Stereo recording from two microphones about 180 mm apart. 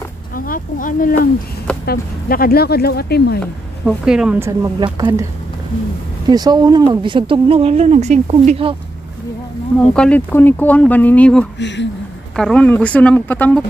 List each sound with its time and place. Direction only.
0.5 s speech: 50° left (ahead or behind)
3.8 s a woman's voice: 5° right (ahead or behind)
4.4 s speech: 20° right (ahead or behind)
6.2 s speech: 20° right (ahead or behind)
9.8 s speech: 5° left (ahead or behind)
11.5 s speech: 80° left
12.4 s speech: 5° left (ahead or behind)